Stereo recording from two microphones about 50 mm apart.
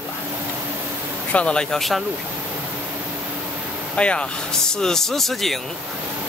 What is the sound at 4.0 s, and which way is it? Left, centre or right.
Speech, left.